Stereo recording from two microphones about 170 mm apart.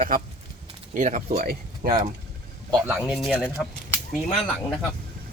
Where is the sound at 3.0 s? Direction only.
5° right (ahead or behind).